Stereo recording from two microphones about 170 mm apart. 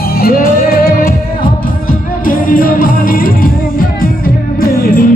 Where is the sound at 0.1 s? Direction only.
60° left (ahead or behind).